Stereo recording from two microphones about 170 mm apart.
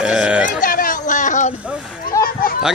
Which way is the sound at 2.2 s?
60° left (ahead or behind).